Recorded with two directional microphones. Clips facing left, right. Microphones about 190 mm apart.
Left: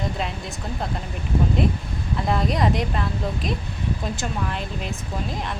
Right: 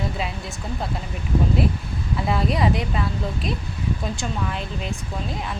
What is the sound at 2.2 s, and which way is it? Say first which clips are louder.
Speech: even; centre (ahead or behind).